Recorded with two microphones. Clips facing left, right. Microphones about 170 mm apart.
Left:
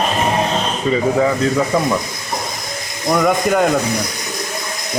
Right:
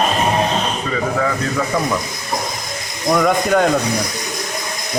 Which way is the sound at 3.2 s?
5° left (ahead or behind).